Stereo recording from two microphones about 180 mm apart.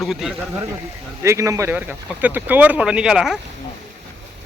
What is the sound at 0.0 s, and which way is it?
Speech, centre (ahead or behind).